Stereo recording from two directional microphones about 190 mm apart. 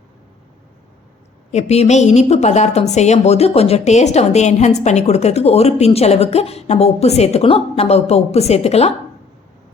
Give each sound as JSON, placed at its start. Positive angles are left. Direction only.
{"t": 1.5, "sound": "a woman's voice", "side_deg": 35}